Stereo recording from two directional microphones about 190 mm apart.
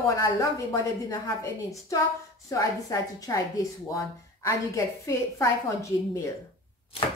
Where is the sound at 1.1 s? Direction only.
15° left (ahead or behind).